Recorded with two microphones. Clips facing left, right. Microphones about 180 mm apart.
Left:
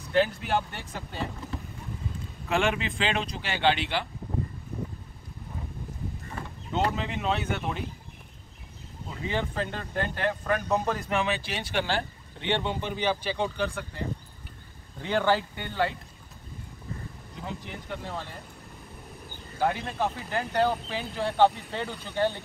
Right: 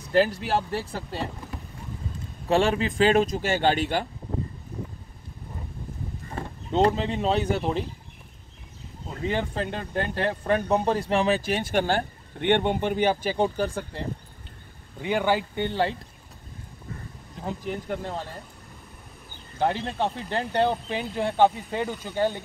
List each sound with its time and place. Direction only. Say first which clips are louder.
0.1 s speech: right 3 dB; 35° right (ahead or behind)
2.4 s speech: right 5 dB; 35° right (ahead or behind)
6.3 s speech: right 6 dB; 35° right (ahead or behind)
9.3 s speech: right 2 dB; 35° right (ahead or behind)
15.0 s speech: right 1 dB; 15° right (ahead or behind)
17.4 s speech: right 7 dB; 45° right (ahead or behind)
19.6 s speech: right 2 dB; 30° right (ahead or behind)
20.9 s speech: right 3 dB; 20° right (ahead or behind)